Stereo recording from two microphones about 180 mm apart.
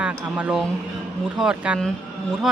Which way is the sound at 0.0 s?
5° right (ahead or behind).